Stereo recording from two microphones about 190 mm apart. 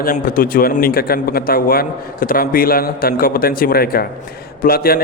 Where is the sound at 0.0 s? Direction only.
50° left (ahead or behind).